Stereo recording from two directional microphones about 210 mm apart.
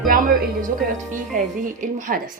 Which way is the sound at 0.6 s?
40° right (ahead or behind).